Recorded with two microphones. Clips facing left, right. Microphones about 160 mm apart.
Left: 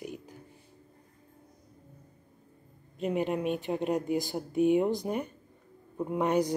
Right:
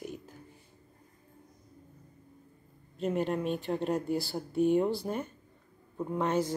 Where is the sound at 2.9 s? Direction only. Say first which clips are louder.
Left 1 dB; 5° left (ahead or behind).